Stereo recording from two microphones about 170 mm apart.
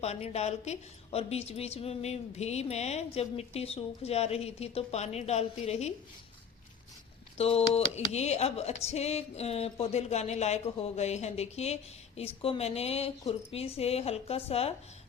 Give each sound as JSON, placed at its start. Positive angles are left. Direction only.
{"t": 0.0, "sound": "speech", "side_deg": 40}
{"t": 7.3, "sound": "speech", "side_deg": 35}